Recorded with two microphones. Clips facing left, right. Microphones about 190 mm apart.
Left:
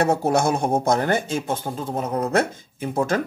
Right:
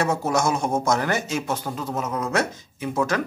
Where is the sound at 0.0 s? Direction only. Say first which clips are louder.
Left 3 dB; 60° left (ahead or behind).